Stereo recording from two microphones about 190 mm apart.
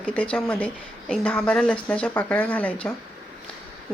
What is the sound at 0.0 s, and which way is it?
Speech, 5° left (ahead or behind).